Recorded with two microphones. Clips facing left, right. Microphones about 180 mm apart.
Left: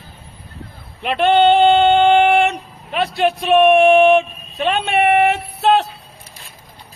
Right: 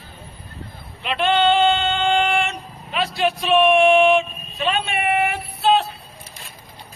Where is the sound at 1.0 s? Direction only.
55° left (ahead or behind); by 5.8 s 75° left (ahead or behind).